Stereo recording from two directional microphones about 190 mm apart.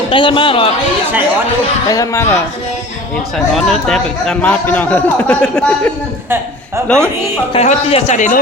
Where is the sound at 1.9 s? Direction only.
15° left (ahead or behind).